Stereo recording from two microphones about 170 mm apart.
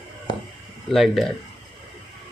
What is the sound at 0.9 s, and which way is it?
Speech, centre (ahead or behind).